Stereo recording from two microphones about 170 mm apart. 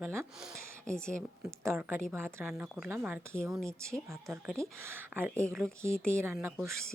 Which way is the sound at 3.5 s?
5° left (ahead or behind).